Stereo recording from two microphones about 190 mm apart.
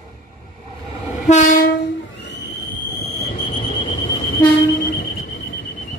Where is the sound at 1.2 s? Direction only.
40° left (ahead or behind).